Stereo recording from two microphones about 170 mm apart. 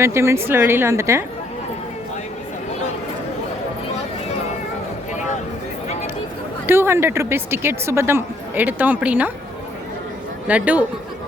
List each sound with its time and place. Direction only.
0.0 s a woman's voice: 15° right (ahead or behind)
6.7 s a woman's voice: 15° right (ahead or behind)
10.4 s a woman's voice: 10° right (ahead or behind)